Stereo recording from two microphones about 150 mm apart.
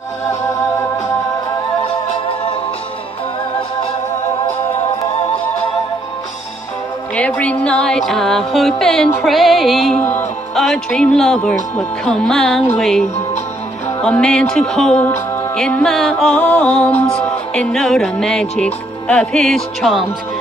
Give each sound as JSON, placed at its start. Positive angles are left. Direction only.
{"t": 7.2, "sound": "music", "side_deg": 10}
{"t": 14.0, "sound": "music", "side_deg": 5}